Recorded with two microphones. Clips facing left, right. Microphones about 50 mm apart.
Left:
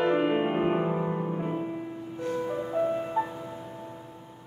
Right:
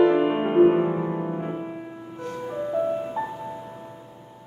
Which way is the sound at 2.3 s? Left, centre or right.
Centre.